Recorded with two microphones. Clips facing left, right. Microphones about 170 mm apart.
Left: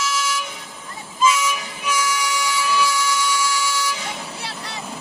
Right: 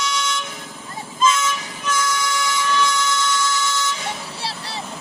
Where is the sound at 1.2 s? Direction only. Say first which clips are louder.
Even; 10° left (ahead or behind).